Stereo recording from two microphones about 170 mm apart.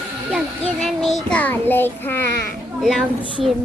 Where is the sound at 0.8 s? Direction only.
Centre (ahead or behind).